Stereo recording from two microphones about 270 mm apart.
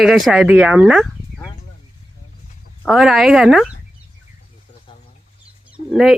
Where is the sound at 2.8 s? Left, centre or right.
Centre.